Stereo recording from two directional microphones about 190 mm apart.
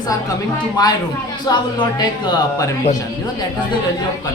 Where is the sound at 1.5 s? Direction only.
20° left (ahead or behind).